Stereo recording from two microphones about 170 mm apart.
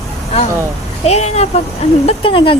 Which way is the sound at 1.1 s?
40° left (ahead or behind).